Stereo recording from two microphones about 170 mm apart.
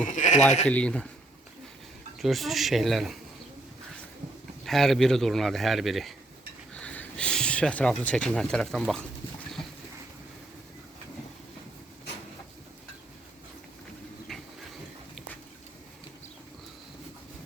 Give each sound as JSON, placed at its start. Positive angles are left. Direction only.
{"t": 0.1, "sound": "sheep", "side_deg": 45}
{"t": 0.7, "sound": "speech", "side_deg": 5}
{"t": 2.1, "sound": "speech", "side_deg": 0}
{"t": 4.6, "sound": "speech", "side_deg": 0}